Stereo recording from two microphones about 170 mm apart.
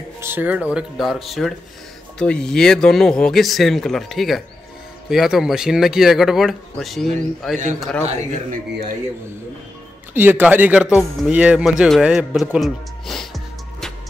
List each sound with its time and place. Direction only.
0.2 s speech: 10° right (ahead or behind)
8.0 s speech: 40° right (ahead or behind)
10.1 s speech: 10° right (ahead or behind)